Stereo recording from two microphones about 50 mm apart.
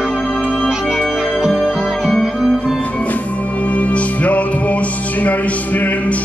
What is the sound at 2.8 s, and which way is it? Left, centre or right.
Music, left.